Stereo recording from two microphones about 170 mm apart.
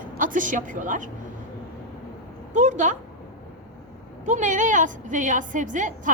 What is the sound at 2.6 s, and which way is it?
Speech, 45° right (ahead or behind).